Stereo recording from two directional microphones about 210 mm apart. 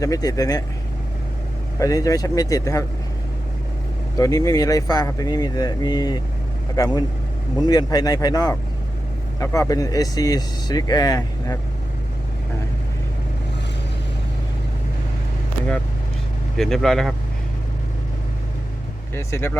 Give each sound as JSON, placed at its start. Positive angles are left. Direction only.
{"t": 0.0, "sound": "speech", "side_deg": 15}
{"t": 1.8, "sound": "speech", "side_deg": 15}
{"t": 4.2, "sound": "speech", "side_deg": 15}
{"t": 16.6, "sound": "speech", "side_deg": 0}
{"t": 19.1, "sound": "speech", "side_deg": 10}